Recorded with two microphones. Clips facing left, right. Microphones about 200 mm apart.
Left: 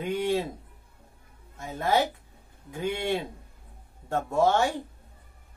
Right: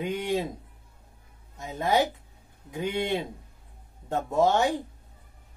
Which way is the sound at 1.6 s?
15° right (ahead or behind).